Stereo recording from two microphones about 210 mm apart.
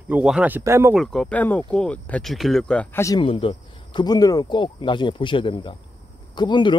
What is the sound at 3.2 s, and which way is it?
Speech, 25° left (ahead or behind).